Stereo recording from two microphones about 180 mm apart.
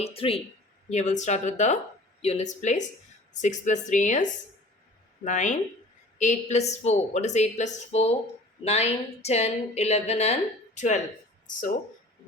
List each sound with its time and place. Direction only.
0.0 s a woman's voice: 30° left (ahead or behind)